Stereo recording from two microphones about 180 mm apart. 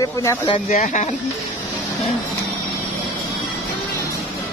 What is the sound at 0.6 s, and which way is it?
Speech, 40° left (ahead or behind).